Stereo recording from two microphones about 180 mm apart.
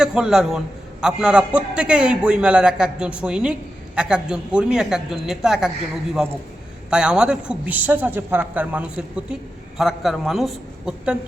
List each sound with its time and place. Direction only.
0.0 s speech: 5° right (ahead or behind)
6.9 s speech: 5° right (ahead or behind)